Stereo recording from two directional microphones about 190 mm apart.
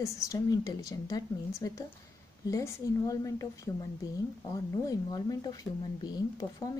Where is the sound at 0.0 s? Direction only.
15° left (ahead or behind).